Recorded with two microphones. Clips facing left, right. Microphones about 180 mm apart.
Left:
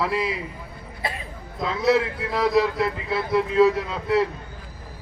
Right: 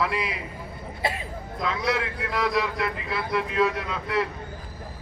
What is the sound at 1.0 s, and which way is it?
Throat clearing, 25° right (ahead or behind).